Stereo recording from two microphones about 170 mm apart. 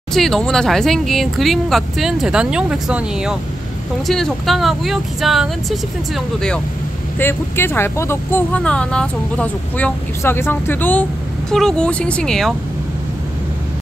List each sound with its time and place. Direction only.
0.1 s speech: centre (ahead or behind)
7.2 s speech: 15° left (ahead or behind)